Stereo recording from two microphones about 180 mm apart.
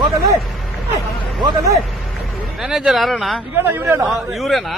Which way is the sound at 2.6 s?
5° right (ahead or behind).